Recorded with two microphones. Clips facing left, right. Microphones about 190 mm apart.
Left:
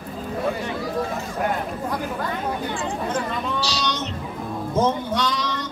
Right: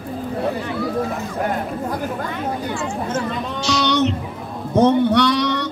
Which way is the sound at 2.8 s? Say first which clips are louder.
Right 2 dB; 35° left (ahead or behind).